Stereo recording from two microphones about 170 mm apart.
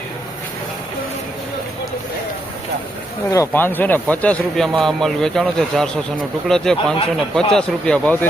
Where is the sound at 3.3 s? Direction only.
15° left (ahead or behind).